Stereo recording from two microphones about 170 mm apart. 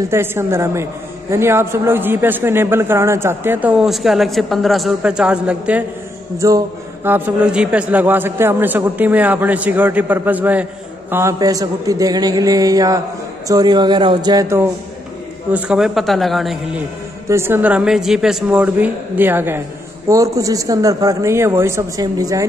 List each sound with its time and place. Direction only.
0.1 s a man's voice: 15° right (ahead or behind)
3.8 s a man's voice: centre (ahead or behind)
6.3 s a man's voice: 20° right (ahead or behind)
15.5 s a man's voice: 5° right (ahead or behind)
17.3 s a man's voice: 15° right (ahead or behind)